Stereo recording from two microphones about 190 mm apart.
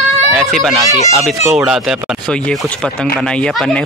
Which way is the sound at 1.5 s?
5° right (ahead or behind).